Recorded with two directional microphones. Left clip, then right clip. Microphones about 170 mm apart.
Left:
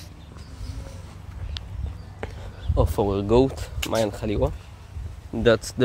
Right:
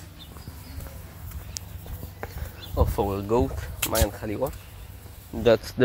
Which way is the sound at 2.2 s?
35° left (ahead or behind).